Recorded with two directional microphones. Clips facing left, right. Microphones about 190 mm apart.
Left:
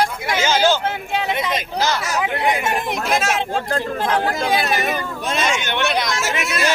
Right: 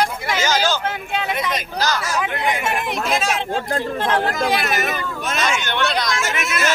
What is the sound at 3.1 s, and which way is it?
Speech, 5° left (ahead or behind).